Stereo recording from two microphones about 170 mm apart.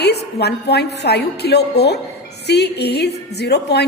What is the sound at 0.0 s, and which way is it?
A woman's voice, 75° left (ahead or behind).